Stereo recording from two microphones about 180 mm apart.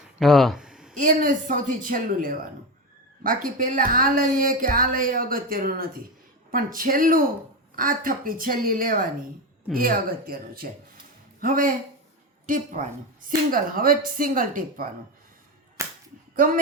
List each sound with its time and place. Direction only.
0.2 s a sound: centre (ahead or behind)
0.9 s speech: 50° right (ahead or behind)
16.3 s speech: 50° right (ahead or behind)